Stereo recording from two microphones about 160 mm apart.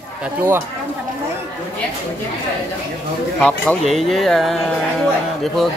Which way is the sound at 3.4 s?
10° left (ahead or behind).